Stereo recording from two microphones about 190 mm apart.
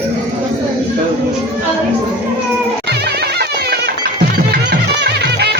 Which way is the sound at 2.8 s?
60° right (ahead or behind).